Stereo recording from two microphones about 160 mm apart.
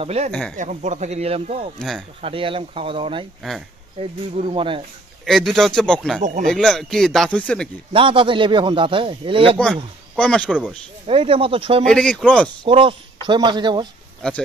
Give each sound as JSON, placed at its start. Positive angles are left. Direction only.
{"t": 0.0, "sound": "a man's voice", "side_deg": -40}
{"t": 0.3, "sound": "speech", "side_deg": 0}
{"t": 0.6, "sound": "speech", "side_deg": -50}
{"t": 1.8, "sound": "speech", "side_deg": 5}
{"t": 2.2, "sound": "a man's voice", "side_deg": -35}
{"t": 5.2, "sound": "speech", "side_deg": 0}
{"t": 7.9, "sound": "a man's voice", "side_deg": -35}
{"t": 10.1, "sound": "speech", "side_deg": 5}
{"t": 11.1, "sound": "a man's voice", "side_deg": -35}
{"t": 11.8, "sound": "speech", "side_deg": 5}
{"t": 12.6, "sound": "speech", "side_deg": -30}